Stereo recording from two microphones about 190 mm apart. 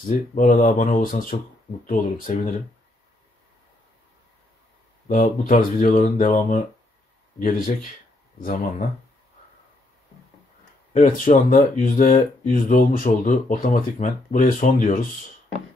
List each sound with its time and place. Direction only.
0.0 s speech: 45° left (ahead or behind)
5.0 s speech: 45° left (ahead or behind)
10.9 s speech: 45° left (ahead or behind)